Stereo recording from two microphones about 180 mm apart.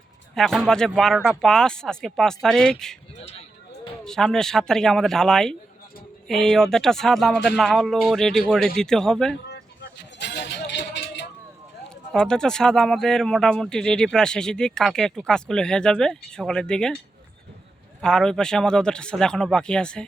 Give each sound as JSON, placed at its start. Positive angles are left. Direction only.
{"t": 0.3, "sound": "speech", "side_deg": 0}
{"t": 3.2, "sound": "speech", "side_deg": 35}
{"t": 4.0, "sound": "speech", "side_deg": 5}
{"t": 10.2, "sound": "vehicle", "side_deg": 70}
{"t": 12.1, "sound": "speech", "side_deg": 5}
{"t": 18.0, "sound": "speech", "side_deg": 5}